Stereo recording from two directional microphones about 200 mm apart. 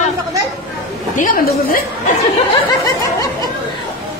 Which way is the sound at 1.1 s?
45° left (ahead or behind).